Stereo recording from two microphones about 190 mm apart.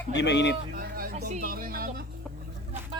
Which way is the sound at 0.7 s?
50° right (ahead or behind).